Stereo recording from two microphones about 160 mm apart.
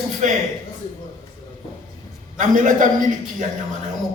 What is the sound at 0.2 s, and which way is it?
Speech, 50° right (ahead or behind).